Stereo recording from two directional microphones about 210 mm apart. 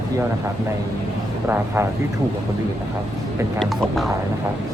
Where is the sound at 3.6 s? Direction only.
Centre (ahead or behind).